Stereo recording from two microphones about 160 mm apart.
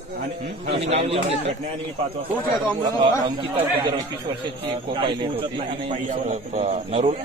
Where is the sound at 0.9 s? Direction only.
40° right (ahead or behind).